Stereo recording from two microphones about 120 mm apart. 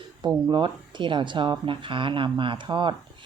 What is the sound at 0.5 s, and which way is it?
Speech, 40° right (ahead or behind).